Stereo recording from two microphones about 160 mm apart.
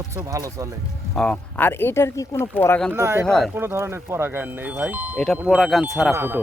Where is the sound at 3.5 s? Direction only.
15° right (ahead or behind).